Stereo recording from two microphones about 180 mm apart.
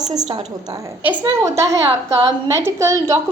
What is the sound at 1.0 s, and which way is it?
A woman's voice, 15° right (ahead or behind).